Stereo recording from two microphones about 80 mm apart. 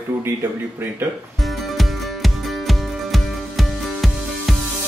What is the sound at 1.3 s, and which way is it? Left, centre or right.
Music, centre.